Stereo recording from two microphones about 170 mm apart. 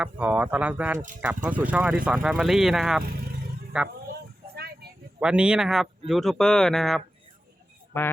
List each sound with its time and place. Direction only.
0.0 s speech: 10° right (ahead or behind)
0.9 s speech: 50° right (ahead or behind)
1.2 s speech: 10° right (ahead or behind)
4.5 s a sound: 65° right (ahead or behind)
5.2 s speech: 5° right (ahead or behind)
7.9 s speech: 15° left (ahead or behind)